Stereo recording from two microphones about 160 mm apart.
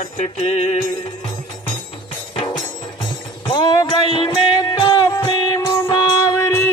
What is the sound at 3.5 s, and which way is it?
Music, 25° left (ahead or behind).